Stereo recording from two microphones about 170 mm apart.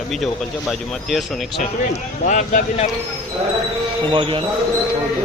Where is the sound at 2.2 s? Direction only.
50° left (ahead or behind).